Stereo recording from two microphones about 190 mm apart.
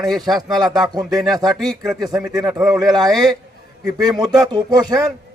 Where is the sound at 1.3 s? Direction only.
20° right (ahead or behind).